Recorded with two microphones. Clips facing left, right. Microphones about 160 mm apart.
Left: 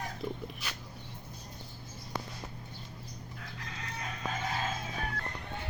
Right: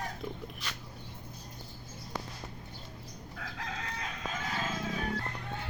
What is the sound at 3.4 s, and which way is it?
Chicken, 90° right.